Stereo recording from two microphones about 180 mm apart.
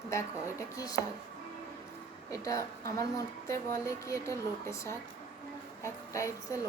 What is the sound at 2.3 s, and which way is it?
A woman's voice, 15° left (ahead or behind).